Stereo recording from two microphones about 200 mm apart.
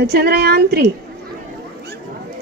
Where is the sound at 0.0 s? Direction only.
55° right (ahead or behind).